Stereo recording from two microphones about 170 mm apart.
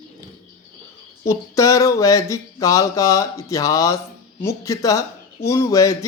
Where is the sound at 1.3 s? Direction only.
20° left (ahead or behind).